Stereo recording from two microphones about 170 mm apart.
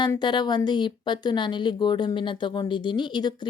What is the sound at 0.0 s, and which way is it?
Speech, 25° left (ahead or behind).